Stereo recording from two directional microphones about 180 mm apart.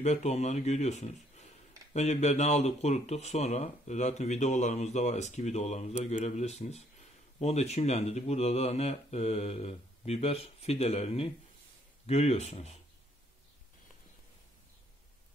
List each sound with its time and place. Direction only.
0.0 s speech: 40° left (ahead or behind)